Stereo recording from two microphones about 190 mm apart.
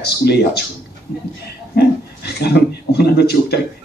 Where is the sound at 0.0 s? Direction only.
60° left (ahead or behind).